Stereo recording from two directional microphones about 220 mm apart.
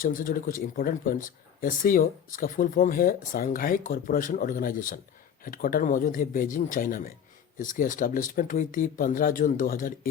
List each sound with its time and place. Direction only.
0.0 s speech: 40° left (ahead or behind)